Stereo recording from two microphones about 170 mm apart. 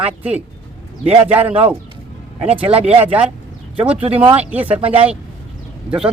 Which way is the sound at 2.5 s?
35° right (ahead or behind).